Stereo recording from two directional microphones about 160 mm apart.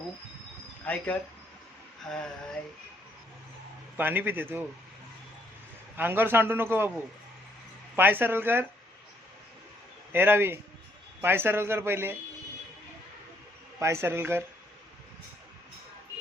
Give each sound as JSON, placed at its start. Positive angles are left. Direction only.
{"t": 0.9, "sound": "speech", "side_deg": 10}
{"t": 3.9, "sound": "a man's voice", "side_deg": -10}
{"t": 6.0, "sound": "a man's voice", "side_deg": -15}
{"t": 7.9, "sound": "a man's voice", "side_deg": -10}
{"t": 10.1, "sound": "a man's voice", "side_deg": -15}
{"t": 13.7, "sound": "a man's voice", "side_deg": -15}